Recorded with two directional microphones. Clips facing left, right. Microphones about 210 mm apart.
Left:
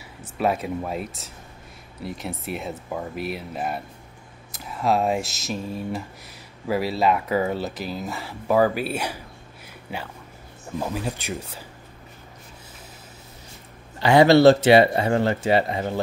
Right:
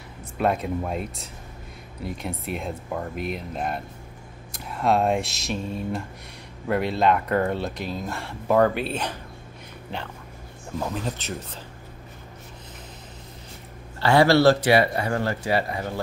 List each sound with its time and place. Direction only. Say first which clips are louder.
0.4 s speech: even; 5° left (ahead or behind)
13.9 s speech: left 3 dB; 15° left (ahead or behind)